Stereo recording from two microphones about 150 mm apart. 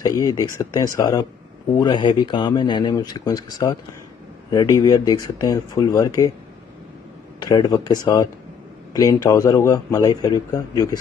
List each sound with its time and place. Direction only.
0.0 s a man's voice: 25° left (ahead or behind)
7.3 s a man's voice: 25° left (ahead or behind)